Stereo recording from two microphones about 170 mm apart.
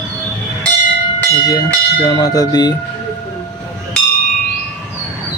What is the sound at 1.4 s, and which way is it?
Speech, 20° left (ahead or behind).